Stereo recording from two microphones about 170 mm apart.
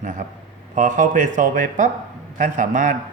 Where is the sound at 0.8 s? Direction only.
50° right (ahead or behind).